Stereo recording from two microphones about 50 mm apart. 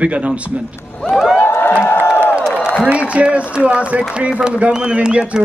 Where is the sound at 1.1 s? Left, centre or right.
Centre.